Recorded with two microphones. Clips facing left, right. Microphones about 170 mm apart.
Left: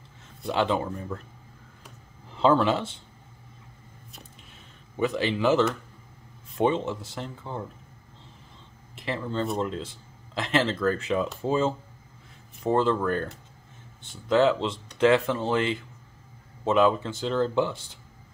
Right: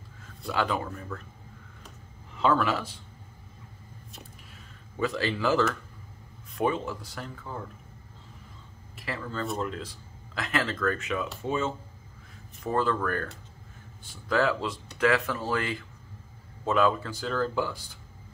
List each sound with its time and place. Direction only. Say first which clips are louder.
0.5 s speech: left 4 dB; 25° left (ahead or behind)
2.3 s speech: left 4 dB; 30° left (ahead or behind)
4.9 s speech: left 3 dB; 20° left (ahead or behind)
8.9 s speech: left 5 dB; 25° left (ahead or behind)